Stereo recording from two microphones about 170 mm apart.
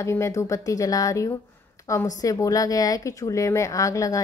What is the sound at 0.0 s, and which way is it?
A woman's voice, 15° left (ahead or behind).